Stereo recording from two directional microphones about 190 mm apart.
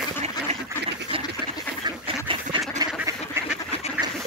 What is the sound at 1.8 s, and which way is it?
Duck, 25° right (ahead or behind).